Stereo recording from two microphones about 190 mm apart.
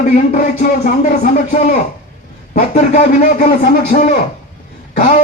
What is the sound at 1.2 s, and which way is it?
Speech, 45° left (ahead or behind).